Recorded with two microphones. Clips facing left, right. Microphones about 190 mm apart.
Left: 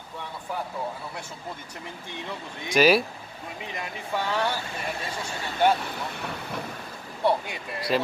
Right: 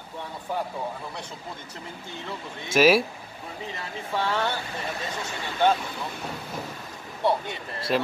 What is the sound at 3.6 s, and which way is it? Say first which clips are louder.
Speech: even; 15° left (ahead or behind).